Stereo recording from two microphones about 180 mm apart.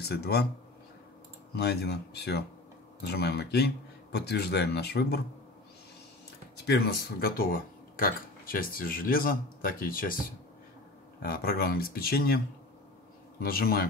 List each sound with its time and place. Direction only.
0.0 s speech: 65° left (ahead or behind)
1.5 s speech: 65° left (ahead or behind)
6.6 s speech: 65° left (ahead or behind); by 10.2 s 50° left (ahead or behind)
11.2 s speech: 55° left (ahead or behind)
13.4 s speech: 55° left (ahead or behind)